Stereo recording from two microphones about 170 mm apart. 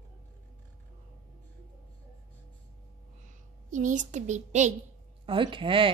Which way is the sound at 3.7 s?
45° right (ahead or behind).